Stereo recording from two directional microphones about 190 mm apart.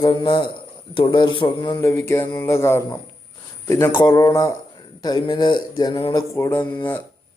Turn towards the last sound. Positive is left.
turn(degrees=10)  # may be behind; listen again after turning